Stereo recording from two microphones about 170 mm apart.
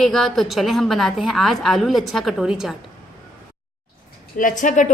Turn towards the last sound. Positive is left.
turn(degrees=50)  # may be behind; listen again after turning